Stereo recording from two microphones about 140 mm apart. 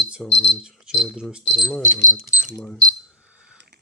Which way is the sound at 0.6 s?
5° right (ahead or behind).